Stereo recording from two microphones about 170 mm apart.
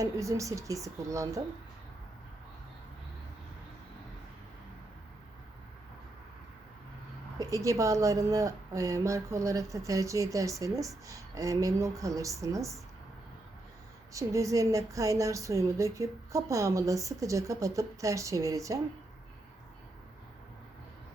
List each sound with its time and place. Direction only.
0.0 s a woman's voice: 20° right (ahead or behind)
7.3 s a woman's voice: 20° right (ahead or behind)
14.1 s a woman's voice: 20° right (ahead or behind)